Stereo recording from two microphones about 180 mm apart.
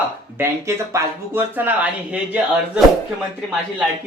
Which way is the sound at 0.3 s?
15° right (ahead or behind).